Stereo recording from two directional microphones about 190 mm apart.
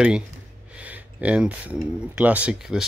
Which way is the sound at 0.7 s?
5° right (ahead or behind).